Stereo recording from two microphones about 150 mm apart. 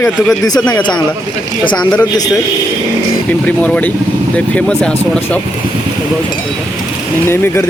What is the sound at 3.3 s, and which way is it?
Speech, 10° left (ahead or behind).